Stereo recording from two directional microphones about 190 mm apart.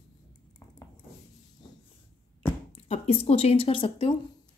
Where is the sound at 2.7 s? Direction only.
30° left (ahead or behind).